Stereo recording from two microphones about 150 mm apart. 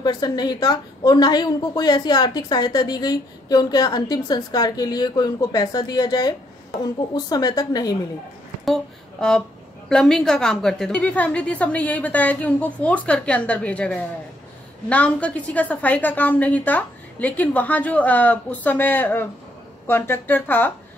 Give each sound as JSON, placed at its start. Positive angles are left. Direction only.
{"t": 0.0, "sound": "a woman's voice", "side_deg": 25}
{"t": 9.2, "sound": "a woman's voice", "side_deg": 5}